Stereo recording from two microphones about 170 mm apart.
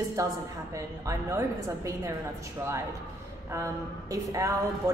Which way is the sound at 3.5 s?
20° right (ahead or behind).